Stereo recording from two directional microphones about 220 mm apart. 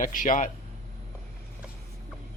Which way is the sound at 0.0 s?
35° left (ahead or behind).